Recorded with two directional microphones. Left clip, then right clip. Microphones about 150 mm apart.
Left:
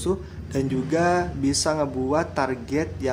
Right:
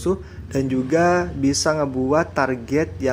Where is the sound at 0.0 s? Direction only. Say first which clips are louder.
Right 3 dB; 30° right (ahead or behind).